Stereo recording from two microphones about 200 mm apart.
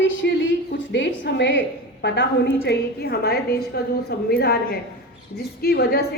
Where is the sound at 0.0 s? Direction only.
65° left (ahead or behind).